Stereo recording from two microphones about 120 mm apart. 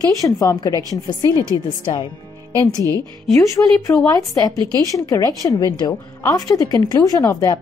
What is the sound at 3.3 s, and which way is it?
A woman's voice, 25° left (ahead or behind).